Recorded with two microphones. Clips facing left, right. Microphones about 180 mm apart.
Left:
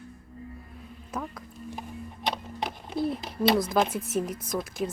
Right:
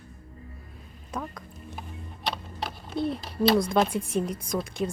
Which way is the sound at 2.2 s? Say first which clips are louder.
Left 1 dB; 15° left (ahead or behind).